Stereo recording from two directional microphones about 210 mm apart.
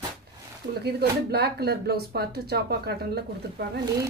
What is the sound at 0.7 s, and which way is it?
Speech, 50° right (ahead or behind).